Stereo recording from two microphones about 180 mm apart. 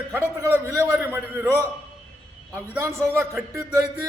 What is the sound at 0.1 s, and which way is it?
A man's voice, 10° right (ahead or behind).